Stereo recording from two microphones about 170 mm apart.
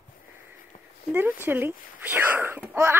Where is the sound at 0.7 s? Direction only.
40° left (ahead or behind).